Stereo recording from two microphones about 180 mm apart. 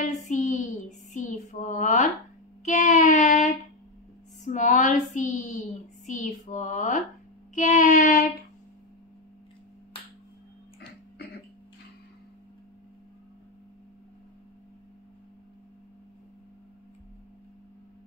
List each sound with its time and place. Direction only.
0.0 s female singing: 40° left (ahead or behind)
2.6 s child singing: 45° left (ahead or behind)
4.5 s a woman's voice: 45° left (ahead or behind)
6.0 s a sound: 40° left (ahead or behind)
7.5 s child singing: 45° left (ahead or behind)